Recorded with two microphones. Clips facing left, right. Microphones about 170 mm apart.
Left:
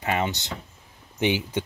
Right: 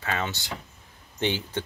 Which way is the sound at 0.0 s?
15° left (ahead or behind).